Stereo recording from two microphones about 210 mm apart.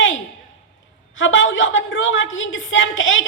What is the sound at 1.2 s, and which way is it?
A woman's voice, 65° left (ahead or behind).